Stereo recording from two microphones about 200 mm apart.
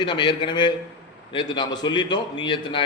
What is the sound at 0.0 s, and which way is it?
A man's voice, 25° left (ahead or behind).